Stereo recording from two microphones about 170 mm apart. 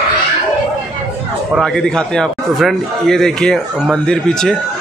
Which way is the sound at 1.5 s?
5° left (ahead or behind).